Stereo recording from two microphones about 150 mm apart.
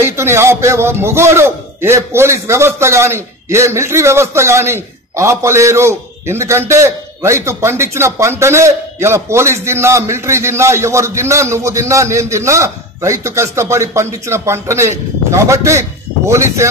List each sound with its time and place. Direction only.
0.0 s a man's voice: 15° right (ahead or behind)